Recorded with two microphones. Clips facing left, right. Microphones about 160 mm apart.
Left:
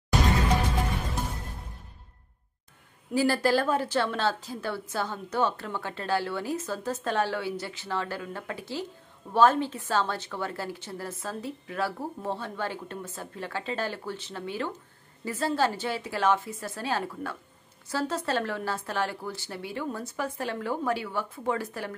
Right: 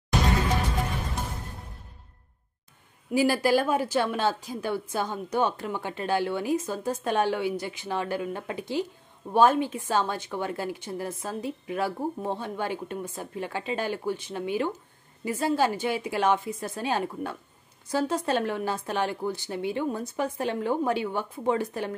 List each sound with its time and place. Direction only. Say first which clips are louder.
3.1 s a woman's voice: right 2 dB; 10° right (ahead or behind)